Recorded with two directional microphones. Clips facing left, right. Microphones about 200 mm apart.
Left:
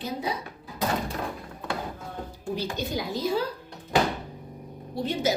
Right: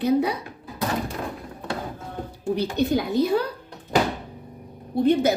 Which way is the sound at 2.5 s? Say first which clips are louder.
Right 8 dB; 60° right (ahead or behind).